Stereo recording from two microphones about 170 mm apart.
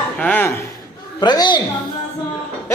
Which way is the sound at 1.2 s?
25° left (ahead or behind).